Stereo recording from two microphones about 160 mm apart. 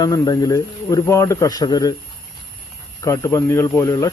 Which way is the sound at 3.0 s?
20° left (ahead or behind).